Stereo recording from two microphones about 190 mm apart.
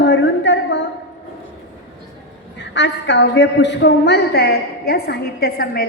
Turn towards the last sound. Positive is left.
turn(degrees=50)  # may be behind; listen again after turning